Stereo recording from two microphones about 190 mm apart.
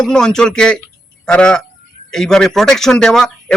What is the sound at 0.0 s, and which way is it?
Speech, 5° left (ahead or behind).